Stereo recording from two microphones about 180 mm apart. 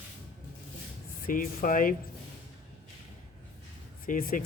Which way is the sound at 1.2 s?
50° left (ahead or behind).